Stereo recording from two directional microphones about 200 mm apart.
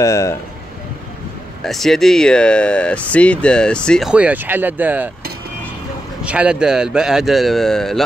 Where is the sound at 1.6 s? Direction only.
Centre (ahead or behind).